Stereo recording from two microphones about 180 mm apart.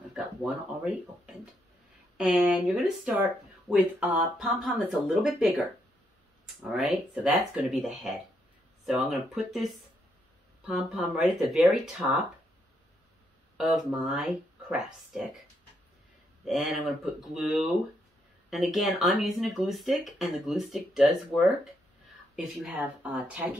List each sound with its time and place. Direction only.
0.1 s a sound: centre (ahead or behind)
2.1 s speech: 5° right (ahead or behind)
13.6 s speech: 5° right (ahead or behind)
16.4 s speech: centre (ahead or behind)